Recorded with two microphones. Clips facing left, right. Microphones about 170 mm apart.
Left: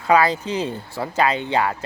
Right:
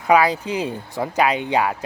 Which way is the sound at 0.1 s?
10° right (ahead or behind).